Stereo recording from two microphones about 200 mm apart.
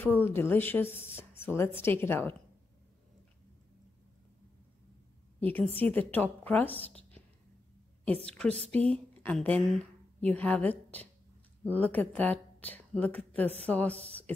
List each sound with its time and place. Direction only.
0.0 s a woman's voice: 10° left (ahead or behind)
5.4 s a woman's voice: 10° left (ahead or behind)
8.5 s speech: 30° right (ahead or behind)
8.8 s a woman's voice: 5° left (ahead or behind)